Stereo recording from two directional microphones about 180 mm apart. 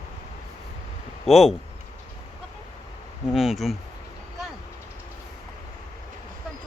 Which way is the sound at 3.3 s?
Centre (ahead or behind).